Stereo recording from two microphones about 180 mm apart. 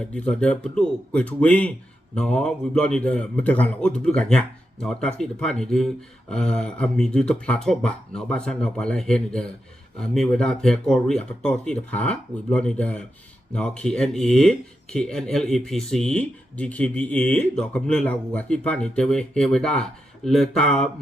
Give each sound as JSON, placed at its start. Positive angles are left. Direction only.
{"t": 0.1, "sound": "a man's voice", "side_deg": 5}